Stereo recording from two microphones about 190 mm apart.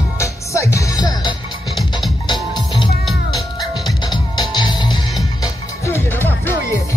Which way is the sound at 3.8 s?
20° left (ahead or behind).